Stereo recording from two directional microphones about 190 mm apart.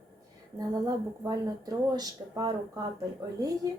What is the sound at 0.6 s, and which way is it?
Speech, 20° right (ahead or behind).